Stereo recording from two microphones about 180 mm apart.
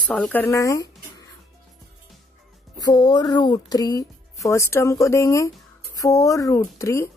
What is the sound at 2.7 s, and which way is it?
Speech, 20° left (ahead or behind).